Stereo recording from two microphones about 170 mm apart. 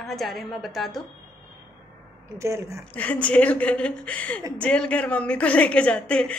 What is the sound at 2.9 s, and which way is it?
A woman's voice, 10° left (ahead or behind).